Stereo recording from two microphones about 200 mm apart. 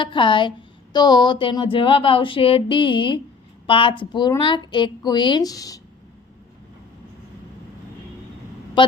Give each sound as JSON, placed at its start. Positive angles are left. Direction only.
{"t": 0.0, "sound": "speech", "side_deg": 25}
{"t": 8.8, "sound": "speech", "side_deg": 25}